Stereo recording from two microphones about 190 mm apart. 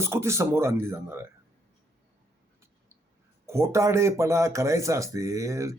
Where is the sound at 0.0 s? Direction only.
15° right (ahead or behind).